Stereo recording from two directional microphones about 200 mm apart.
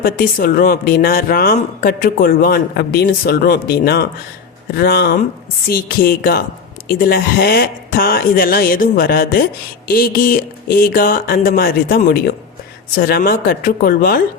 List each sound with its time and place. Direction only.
0.0 s speech: 45° left (ahead or behind)